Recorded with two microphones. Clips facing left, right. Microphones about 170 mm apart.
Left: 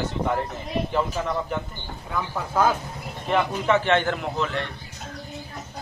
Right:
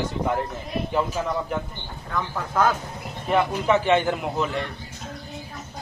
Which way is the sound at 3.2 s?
5° right (ahead or behind).